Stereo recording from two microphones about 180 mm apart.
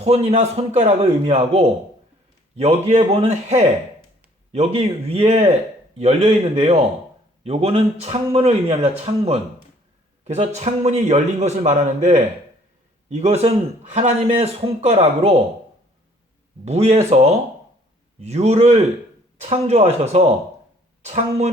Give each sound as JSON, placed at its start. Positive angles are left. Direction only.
{"t": 0.0, "sound": "a man's voice", "side_deg": -35}
{"t": 16.6, "sound": "speech", "side_deg": -35}